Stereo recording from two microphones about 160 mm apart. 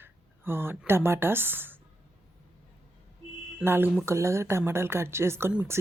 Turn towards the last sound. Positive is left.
turn(degrees=-10)  # may be behind; listen again after turning